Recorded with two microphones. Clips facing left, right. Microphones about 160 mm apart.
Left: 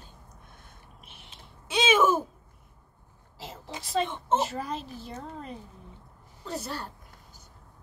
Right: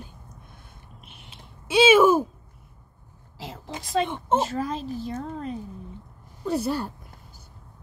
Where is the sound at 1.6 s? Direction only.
10° right (ahead or behind).